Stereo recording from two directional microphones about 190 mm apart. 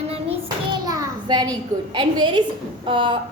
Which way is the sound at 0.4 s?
20° right (ahead or behind).